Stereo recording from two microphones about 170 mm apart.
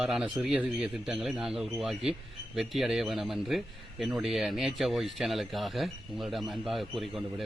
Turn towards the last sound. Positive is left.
turn(degrees=0)  # may be behind; listen again after turning